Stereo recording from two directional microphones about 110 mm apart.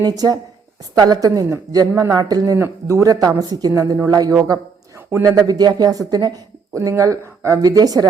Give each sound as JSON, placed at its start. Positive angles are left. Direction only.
{"t": 0.0, "sound": "speech", "side_deg": -35}
{"t": 2.6, "sound": "speech", "side_deg": -25}